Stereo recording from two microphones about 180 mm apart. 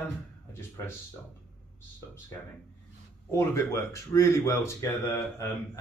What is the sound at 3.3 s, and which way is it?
Speech, 15° left (ahead or behind).